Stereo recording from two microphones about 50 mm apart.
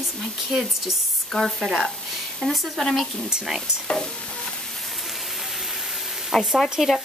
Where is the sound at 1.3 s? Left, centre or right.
Centre.